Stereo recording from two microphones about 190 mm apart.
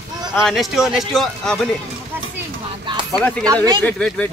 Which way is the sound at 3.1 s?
5° left (ahead or behind).